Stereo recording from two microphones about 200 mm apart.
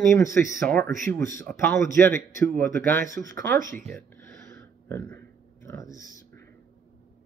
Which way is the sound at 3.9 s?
10° left (ahead or behind).